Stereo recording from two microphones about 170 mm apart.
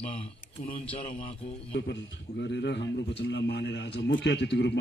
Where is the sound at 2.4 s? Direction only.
90° left.